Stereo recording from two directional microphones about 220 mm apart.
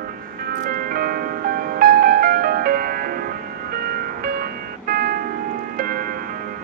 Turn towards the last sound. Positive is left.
turn(degrees=-40)  # may be behind; listen again after turning